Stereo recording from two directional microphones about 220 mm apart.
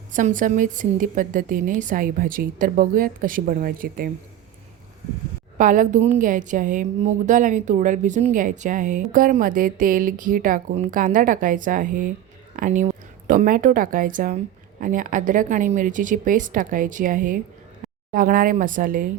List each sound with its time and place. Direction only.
0.1 s a woman's voice: 35° right (ahead or behind)
5.5 s a woman's voice: 35° right (ahead or behind)